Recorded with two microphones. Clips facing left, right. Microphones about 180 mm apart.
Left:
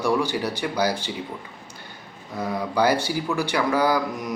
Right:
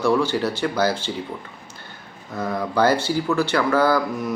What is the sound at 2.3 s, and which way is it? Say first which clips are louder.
Speech: right 2 dB; 10° left (ahead or behind).